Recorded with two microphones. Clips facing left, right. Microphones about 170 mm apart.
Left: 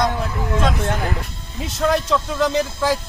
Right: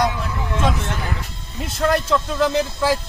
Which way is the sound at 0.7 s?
55° left (ahead or behind).